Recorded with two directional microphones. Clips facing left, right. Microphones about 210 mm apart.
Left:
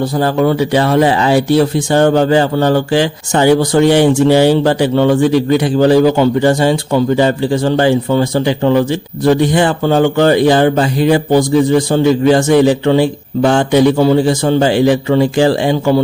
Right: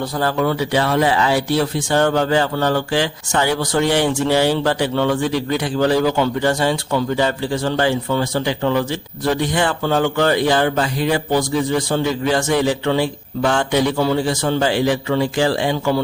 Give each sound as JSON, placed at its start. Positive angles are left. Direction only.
{"t": 0.2, "sound": "a man's voice", "side_deg": 20}